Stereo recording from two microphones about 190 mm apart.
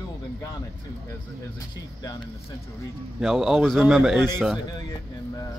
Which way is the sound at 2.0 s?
20° left (ahead or behind).